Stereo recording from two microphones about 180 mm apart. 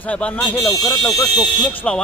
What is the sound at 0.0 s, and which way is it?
Speech, 5° left (ahead or behind).